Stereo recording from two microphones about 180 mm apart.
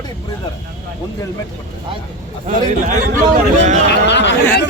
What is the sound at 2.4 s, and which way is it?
Speech, 45° right (ahead or behind).